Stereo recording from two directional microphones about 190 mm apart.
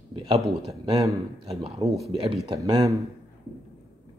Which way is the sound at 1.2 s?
30° right (ahead or behind).